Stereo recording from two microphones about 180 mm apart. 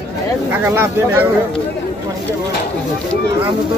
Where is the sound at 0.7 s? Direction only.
15° right (ahead or behind).